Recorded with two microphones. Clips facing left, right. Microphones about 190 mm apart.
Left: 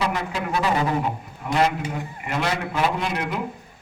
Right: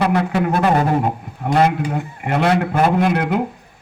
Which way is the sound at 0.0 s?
60° right (ahead or behind).